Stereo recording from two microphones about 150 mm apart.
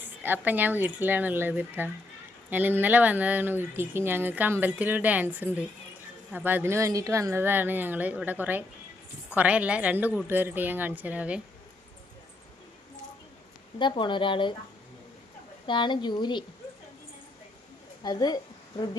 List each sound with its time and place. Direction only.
0.0 s speech: 15° right (ahead or behind)
13.7 s speech: 30° left (ahead or behind)
15.6 s speech: 30° left (ahead or behind)
18.0 s a woman's voice: 25° left (ahead or behind)